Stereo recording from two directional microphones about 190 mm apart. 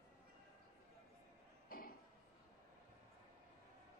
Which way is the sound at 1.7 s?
50° left (ahead or behind).